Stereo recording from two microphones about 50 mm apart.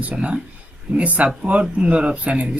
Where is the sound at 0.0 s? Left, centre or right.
Right.